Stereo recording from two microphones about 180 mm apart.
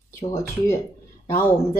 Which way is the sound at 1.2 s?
15° left (ahead or behind).